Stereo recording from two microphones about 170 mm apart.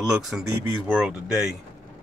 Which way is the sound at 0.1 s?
5° right (ahead or behind).